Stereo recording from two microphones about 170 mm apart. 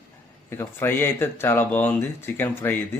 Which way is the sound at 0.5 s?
15° left (ahead or behind).